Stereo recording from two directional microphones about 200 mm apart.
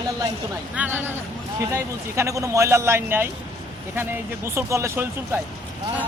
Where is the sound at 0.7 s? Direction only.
10° right (ahead or behind).